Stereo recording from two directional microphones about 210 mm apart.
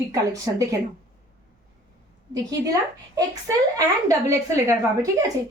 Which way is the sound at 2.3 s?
15° right (ahead or behind).